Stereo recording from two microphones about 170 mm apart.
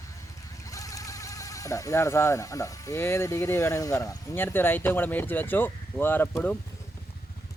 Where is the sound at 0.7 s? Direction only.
20° left (ahead or behind).